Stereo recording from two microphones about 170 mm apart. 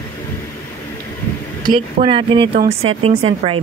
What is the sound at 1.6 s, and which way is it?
Speech, 30° right (ahead or behind).